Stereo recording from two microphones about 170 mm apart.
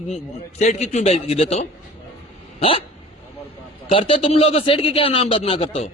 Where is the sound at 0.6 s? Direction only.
40° left (ahead or behind).